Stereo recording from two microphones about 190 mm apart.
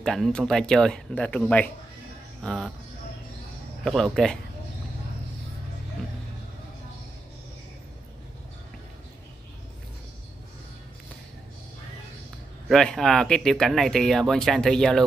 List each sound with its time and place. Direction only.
0.0 s speech: centre (ahead or behind)
3.8 s speech: centre (ahead or behind)
12.6 s speech: centre (ahead or behind)